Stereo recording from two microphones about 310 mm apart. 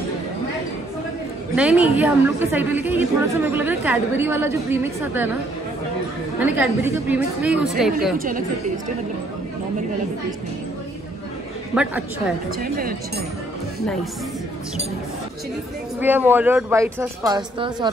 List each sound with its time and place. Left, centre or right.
1.5 s a woman's voice: centre
6.4 s a woman's voice: centre
8.2 s a woman's voice: right
11.7 s a woman's voice: centre
12.4 s a woman's voice: right
16.0 s speech: centre